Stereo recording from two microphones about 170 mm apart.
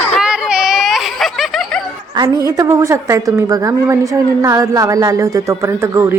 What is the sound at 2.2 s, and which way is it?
A woman's voice, 20° right (ahead or behind).